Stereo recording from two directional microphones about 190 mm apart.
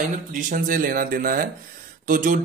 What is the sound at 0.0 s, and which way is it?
Speech, 45° right (ahead or behind).